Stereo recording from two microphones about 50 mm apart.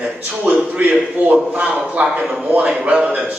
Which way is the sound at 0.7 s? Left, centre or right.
Right.